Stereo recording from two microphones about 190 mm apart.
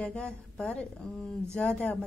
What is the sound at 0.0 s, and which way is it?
A woman's voice, 5° left (ahead or behind).